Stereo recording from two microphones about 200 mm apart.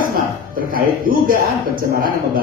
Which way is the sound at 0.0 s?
45° right (ahead or behind).